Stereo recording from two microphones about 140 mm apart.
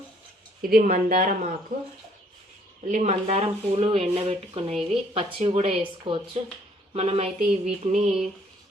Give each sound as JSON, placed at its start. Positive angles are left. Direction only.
{"t": 0.6, "sound": "a woman's voice", "side_deg": -90}
{"t": 2.8, "sound": "speech", "side_deg": -60}